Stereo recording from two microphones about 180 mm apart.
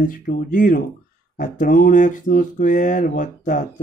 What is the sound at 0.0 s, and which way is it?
Speech, 50° left (ahead or behind).